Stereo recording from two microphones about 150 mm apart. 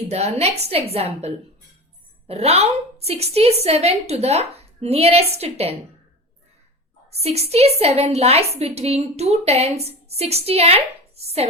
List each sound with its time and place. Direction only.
0.1 s a woman's voice: 45° right (ahead or behind)
7.2 s a woman's voice: 45° right (ahead or behind)